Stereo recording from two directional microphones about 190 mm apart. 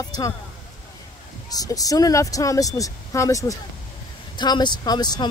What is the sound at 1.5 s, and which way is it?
Speech, 20° left (ahead or behind).